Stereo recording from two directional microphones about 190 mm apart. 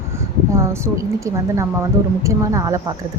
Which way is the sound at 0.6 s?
15° right (ahead or behind).